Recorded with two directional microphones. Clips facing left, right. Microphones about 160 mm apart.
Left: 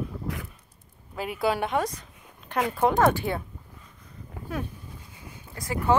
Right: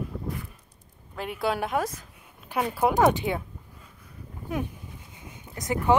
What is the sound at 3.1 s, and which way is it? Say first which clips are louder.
Speech: right 1 dB; 20° right (ahead or behind).